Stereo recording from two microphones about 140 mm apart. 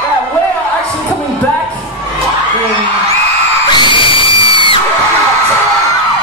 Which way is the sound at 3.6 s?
35° left (ahead or behind).